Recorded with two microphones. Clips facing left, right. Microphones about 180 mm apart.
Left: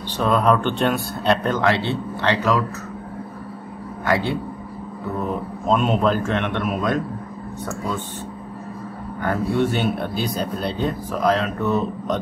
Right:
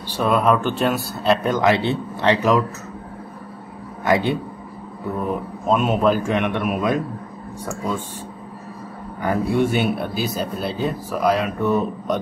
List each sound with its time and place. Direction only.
0.2 s speech: 5° right (ahead or behind)
2.2 s speech: 20° right (ahead or behind)
4.0 s a man's voice: 20° right (ahead or behind)
5.7 s speech: 5° right (ahead or behind)
9.2 s speech: 10° right (ahead or behind)